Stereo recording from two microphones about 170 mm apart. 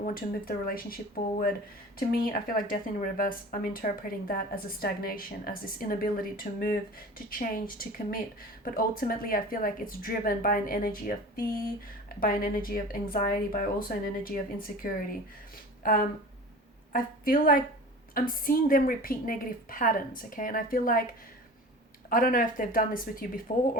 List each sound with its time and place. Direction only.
0.0 s speech: 60° left (ahead or behind)
2.0 s speech: 55° left (ahead or behind)
22.1 s speech: 55° left (ahead or behind)